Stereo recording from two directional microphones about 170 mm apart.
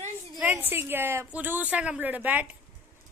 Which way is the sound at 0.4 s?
10° right (ahead or behind).